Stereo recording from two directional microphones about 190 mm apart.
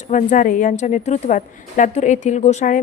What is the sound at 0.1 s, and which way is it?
A woman's voice, 40° left (ahead or behind).